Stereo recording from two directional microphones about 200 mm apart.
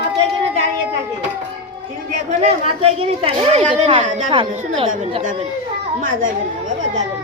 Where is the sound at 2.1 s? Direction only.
30° right (ahead or behind).